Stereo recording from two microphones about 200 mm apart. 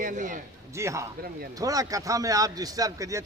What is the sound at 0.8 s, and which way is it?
A man's voice, 15° right (ahead or behind).